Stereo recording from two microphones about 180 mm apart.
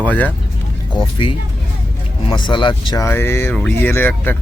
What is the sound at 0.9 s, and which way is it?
Speech, 30° left (ahead or behind).